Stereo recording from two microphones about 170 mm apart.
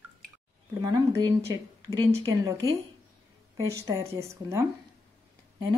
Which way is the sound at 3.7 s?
20° right (ahead or behind).